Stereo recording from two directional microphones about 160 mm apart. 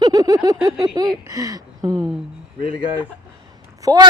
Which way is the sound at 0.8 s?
25° right (ahead or behind).